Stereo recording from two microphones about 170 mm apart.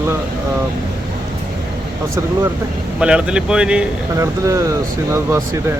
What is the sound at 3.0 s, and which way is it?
Speech, 5° right (ahead or behind).